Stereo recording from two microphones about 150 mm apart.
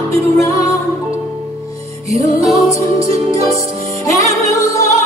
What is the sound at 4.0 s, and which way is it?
Music, 20° left (ahead or behind).